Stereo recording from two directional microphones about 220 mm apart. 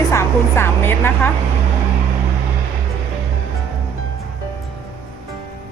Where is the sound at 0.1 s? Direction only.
10° left (ahead or behind).